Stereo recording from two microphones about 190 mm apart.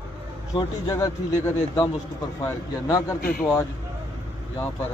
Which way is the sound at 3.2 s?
50° left (ahead or behind).